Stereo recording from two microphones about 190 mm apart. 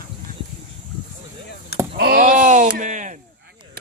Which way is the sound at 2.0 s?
50° right (ahead or behind).